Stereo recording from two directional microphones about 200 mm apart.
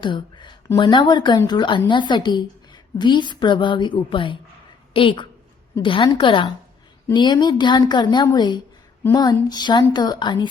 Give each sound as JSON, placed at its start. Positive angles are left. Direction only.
{"t": 0.0, "sound": "a woman's voice", "side_deg": 25}